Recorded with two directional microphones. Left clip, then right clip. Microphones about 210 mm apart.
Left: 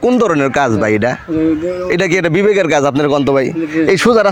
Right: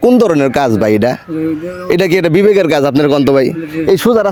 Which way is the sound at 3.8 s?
25° right (ahead or behind).